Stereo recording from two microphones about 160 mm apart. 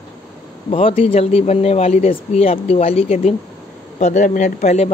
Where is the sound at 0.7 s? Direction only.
35° left (ahead or behind).